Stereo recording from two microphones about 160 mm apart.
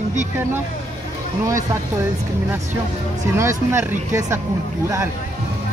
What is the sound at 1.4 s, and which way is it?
Speech, 20° right (ahead or behind).